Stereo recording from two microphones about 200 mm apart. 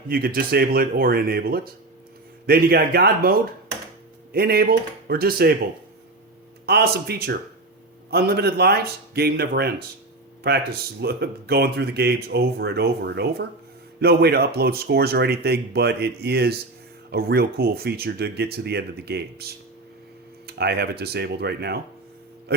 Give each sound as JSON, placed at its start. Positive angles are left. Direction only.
{"t": 0.1, "sound": "speech", "side_deg": -45}
{"t": 6.7, "sound": "speech", "side_deg": -50}